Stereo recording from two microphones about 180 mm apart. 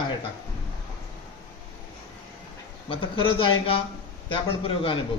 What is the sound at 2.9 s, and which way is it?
A man's voice, 30° left (ahead or behind).